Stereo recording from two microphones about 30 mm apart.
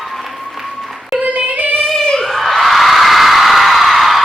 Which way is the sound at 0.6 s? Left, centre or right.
Centre.